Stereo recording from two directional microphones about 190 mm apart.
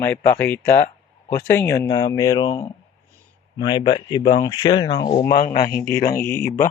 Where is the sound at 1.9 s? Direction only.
20° left (ahead or behind).